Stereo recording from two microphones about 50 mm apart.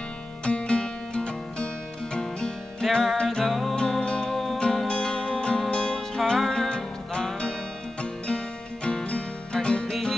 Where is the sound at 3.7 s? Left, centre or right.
Centre.